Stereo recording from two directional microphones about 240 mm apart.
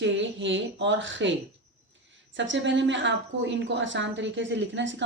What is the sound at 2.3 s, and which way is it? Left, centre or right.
A woman's voice, right.